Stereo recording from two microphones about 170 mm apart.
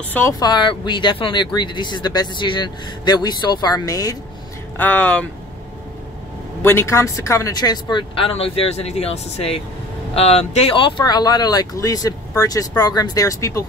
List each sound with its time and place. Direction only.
0.1 s speech: 15° left (ahead or behind)
0.4 s speech: 25° left (ahead or behind)
4.7 s speech: 10° left (ahead or behind)
6.6 s speech: 15° left (ahead or behind)